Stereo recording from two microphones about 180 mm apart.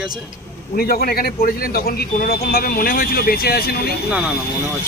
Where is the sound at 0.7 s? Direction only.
55° left (ahead or behind).